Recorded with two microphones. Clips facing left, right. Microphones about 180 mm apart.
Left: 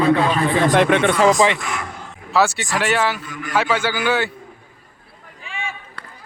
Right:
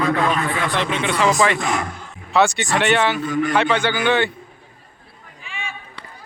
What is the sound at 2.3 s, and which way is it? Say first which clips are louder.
Speech: right 1 dB; 5° left (ahead or behind).